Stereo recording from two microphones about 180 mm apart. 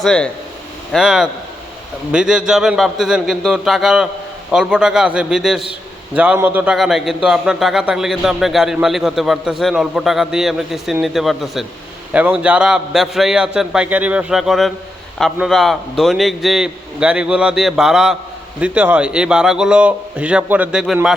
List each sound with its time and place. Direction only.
0.0 s a man's voice: 5° left (ahead or behind)